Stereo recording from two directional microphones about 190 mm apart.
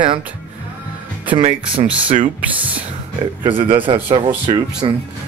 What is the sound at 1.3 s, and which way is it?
Speech, 30° right (ahead or behind).